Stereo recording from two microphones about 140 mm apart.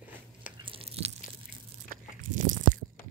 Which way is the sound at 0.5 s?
40° right (ahead or behind).